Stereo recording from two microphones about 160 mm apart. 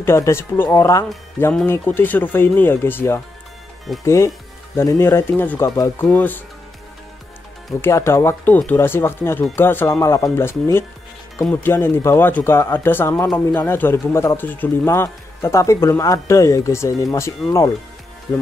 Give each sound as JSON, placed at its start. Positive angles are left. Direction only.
{"t": 0.0, "sound": "speech", "side_deg": 15}
{"t": 7.8, "sound": "speech", "side_deg": 15}